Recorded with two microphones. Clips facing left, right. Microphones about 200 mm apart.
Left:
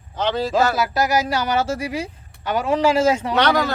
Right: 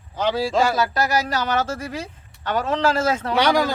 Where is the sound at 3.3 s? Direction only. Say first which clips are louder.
Even; 10° right (ahead or behind).